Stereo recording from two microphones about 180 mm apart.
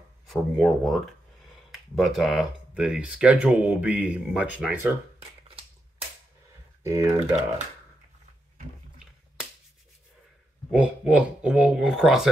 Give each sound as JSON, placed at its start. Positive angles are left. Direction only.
{"t": 0.3, "sound": "speech", "side_deg": 0}
{"t": 6.8, "sound": "speech", "side_deg": -15}
{"t": 10.7, "sound": "speech", "side_deg": -5}